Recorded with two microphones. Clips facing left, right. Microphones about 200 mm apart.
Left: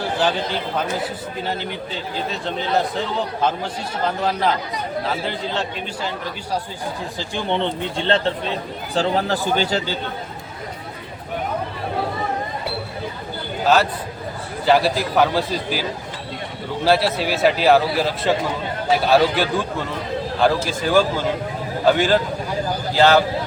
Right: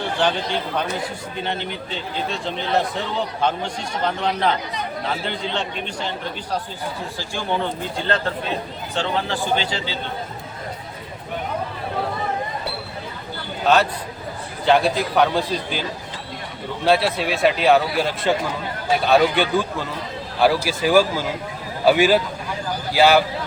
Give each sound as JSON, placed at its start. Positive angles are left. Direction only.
{"t": 1.5, "sound": "a man's voice", "side_deg": 5}
{"t": 4.2, "sound": "a man's voice", "side_deg": 5}
{"t": 7.2, "sound": "a man's voice", "side_deg": 20}
{"t": 9.0, "sound": "speech", "side_deg": 40}
{"t": 13.7, "sound": "a man's voice", "side_deg": 0}
{"t": 16.8, "sound": "a man's voice", "side_deg": 0}